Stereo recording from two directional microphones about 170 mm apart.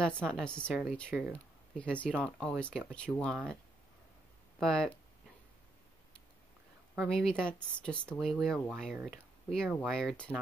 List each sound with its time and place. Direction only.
0.0 s speech: 5° left (ahead or behind)
4.6 s speech: 5° left (ahead or behind)
7.0 s speech: 5° left (ahead or behind)